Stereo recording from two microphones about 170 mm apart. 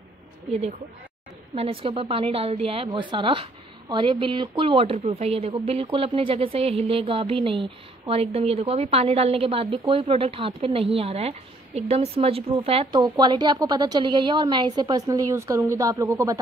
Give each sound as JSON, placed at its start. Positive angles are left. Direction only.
{"t": 0.5, "sound": "a woman's voice", "side_deg": -35}